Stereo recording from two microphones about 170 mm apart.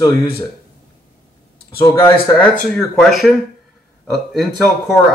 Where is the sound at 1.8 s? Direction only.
15° left (ahead or behind).